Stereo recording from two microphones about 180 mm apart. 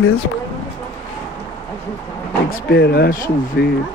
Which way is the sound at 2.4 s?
60° left (ahead or behind).